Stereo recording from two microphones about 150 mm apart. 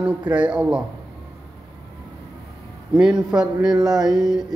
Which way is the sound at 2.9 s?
5° right (ahead or behind).